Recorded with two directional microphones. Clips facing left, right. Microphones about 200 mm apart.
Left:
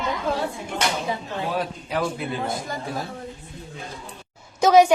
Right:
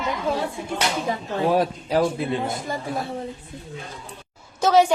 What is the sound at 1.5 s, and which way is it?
Speech, 35° right (ahead or behind).